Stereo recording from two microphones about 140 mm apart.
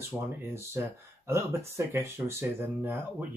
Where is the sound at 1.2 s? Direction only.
20° right (ahead or behind).